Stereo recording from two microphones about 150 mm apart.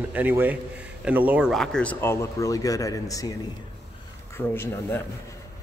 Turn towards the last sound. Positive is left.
turn(degrees=15)  # may be behind; listen again after turning